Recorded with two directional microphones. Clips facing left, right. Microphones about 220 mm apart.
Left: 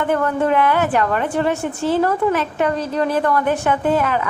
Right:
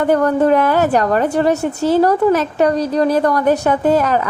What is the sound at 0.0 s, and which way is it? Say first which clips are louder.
A woman's voice: right 5 dB; 40° right (ahead or behind).